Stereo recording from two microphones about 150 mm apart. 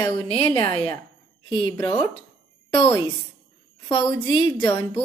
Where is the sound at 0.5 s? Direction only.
25° left (ahead or behind).